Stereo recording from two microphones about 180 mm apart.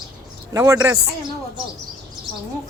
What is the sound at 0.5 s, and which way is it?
Speech, 15° right (ahead or behind).